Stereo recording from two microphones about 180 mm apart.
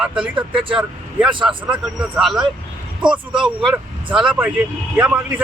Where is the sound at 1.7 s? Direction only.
5° right (ahead or behind).